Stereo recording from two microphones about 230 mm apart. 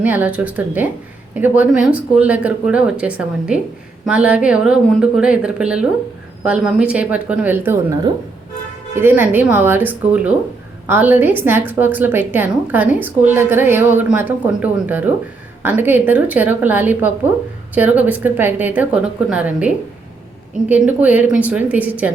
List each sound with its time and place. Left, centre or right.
0.0 s a woman's voice: centre